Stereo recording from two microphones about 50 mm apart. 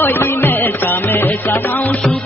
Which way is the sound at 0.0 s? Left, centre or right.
Left.